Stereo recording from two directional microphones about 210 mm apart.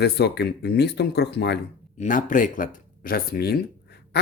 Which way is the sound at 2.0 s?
35° left (ahead or behind).